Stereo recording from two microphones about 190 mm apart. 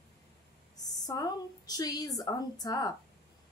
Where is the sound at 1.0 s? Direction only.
20° left (ahead or behind).